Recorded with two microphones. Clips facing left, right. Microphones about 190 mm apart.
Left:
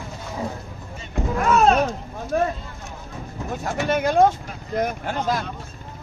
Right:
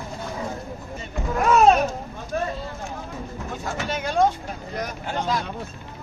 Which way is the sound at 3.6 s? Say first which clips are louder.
Left 7 dB; 50° left (ahead or behind).